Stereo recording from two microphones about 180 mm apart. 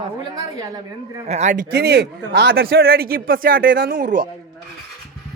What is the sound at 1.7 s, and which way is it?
Speech, 65° right (ahead or behind).